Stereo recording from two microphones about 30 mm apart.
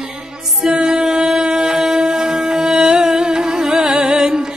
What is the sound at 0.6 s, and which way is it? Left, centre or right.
Music, right.